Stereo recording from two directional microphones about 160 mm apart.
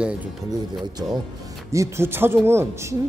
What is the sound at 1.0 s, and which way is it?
A woman's voice, 25° right (ahead or behind).